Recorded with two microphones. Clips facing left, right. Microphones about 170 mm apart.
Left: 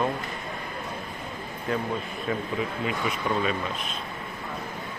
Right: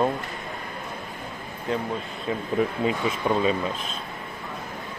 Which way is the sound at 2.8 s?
25° right (ahead or behind).